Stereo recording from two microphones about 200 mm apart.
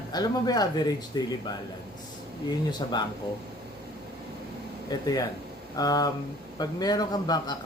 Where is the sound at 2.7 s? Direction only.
20° left (ahead or behind).